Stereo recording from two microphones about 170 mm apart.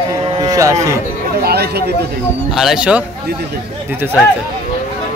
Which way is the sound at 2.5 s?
Centre (ahead or behind).